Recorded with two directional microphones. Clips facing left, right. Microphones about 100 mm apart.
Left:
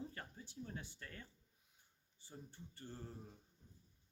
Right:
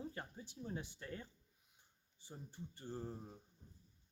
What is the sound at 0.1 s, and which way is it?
Speech, 20° right (ahead or behind).